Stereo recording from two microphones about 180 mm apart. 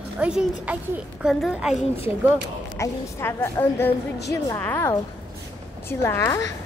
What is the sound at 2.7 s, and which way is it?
A woman's voice, 15° left (ahead or behind).